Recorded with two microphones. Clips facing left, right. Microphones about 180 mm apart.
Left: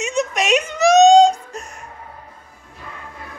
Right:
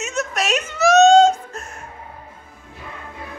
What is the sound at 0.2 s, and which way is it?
Whimper, 15° left (ahead or behind).